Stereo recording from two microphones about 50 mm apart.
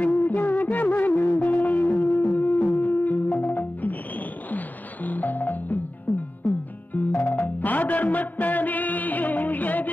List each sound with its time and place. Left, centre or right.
0.2 s music: left
7.2 s music: left